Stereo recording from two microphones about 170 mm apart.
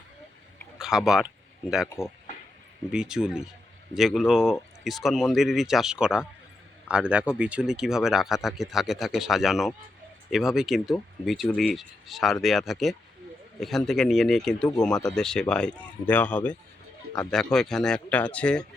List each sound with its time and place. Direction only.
0.8 s speech: 5° right (ahead or behind)
2.0 s speech: 15° left (ahead or behind)
2.9 s a man's voice: 5° right (ahead or behind)